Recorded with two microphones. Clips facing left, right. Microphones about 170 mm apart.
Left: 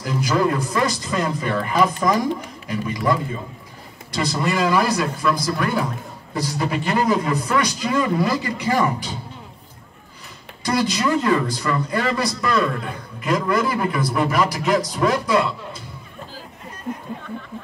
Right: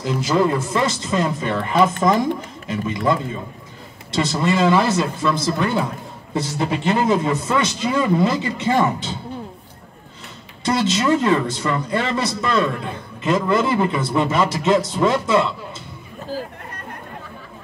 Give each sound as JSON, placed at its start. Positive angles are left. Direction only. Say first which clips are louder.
{"t": 0.0, "sound": "a man's voice", "louder": "right 2 dB", "side_deg": -25}
{"t": 10.6, "sound": "a man's voice", "louder": "right 1 dB", "side_deg": -25}